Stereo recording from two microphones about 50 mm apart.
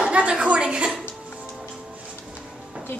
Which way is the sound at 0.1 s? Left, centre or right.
Right.